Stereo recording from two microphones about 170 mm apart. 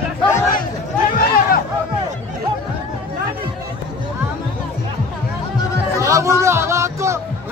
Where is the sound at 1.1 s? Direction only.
60° left (ahead or behind).